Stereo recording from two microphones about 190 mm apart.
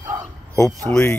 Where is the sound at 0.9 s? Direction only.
25° right (ahead or behind).